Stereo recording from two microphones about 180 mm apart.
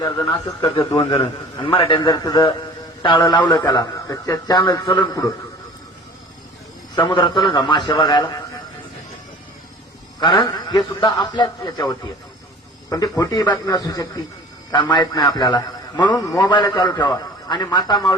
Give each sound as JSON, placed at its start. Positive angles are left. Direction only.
{"t": 0.0, "sound": "a man's voice", "side_deg": 25}
{"t": 6.9, "sound": "a man's voice", "side_deg": 20}
{"t": 10.2, "sound": "a man's voice", "side_deg": 25}